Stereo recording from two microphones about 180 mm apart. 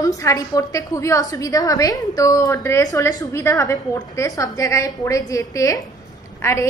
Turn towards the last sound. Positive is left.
turn(degrees=15)  # may be behind; listen again after turning